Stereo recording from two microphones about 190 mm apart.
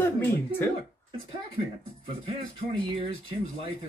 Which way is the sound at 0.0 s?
10° left (ahead or behind).